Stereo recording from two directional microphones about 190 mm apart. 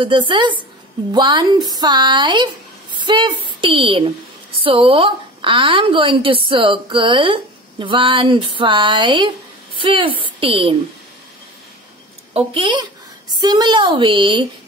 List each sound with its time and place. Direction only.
0.0 s a woman's voice: 25° right (ahead or behind)
12.4 s a woman's voice: 25° right (ahead or behind)